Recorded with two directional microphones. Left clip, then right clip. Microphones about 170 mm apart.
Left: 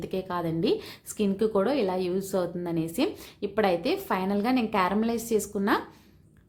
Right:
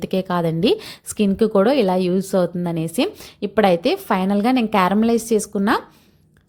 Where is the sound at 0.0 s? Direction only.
50° right (ahead or behind).